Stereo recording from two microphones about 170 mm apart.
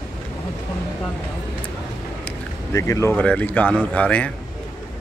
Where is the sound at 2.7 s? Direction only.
15° left (ahead or behind).